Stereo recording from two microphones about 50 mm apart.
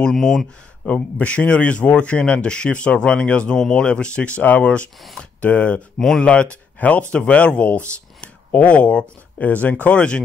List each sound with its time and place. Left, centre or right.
0.1 s speech: centre
0.8 s speech: left
5.9 s speech: centre
6.2 s speech: left